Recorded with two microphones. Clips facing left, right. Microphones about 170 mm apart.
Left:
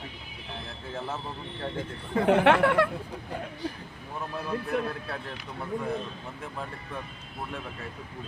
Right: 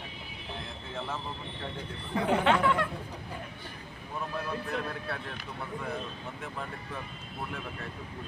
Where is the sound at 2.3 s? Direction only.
70° left (ahead or behind).